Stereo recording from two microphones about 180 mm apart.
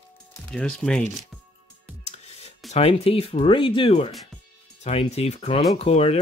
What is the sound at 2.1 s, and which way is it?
Music, 35° left (ahead or behind).